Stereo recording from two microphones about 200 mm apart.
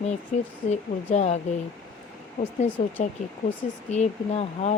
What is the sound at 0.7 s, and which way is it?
Speech, 35° left (ahead or behind).